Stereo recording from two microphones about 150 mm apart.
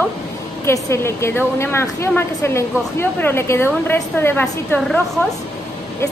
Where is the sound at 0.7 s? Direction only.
15° left (ahead or behind).